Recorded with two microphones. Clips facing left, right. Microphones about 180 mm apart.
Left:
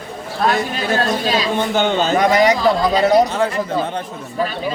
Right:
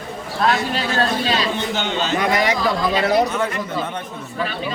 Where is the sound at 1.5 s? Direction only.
50° left (ahead or behind); by 4.0 s 30° left (ahead or behind).